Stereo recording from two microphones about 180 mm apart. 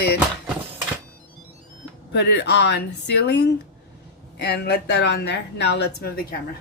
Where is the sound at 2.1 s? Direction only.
70° left (ahead or behind).